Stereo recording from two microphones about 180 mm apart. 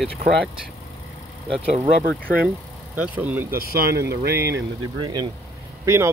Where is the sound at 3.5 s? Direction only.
60° right (ahead or behind).